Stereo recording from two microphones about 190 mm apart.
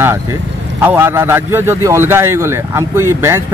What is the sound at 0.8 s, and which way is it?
A man's voice, 10° right (ahead or behind).